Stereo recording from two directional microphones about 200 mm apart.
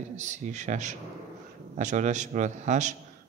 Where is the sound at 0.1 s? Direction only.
35° right (ahead or behind).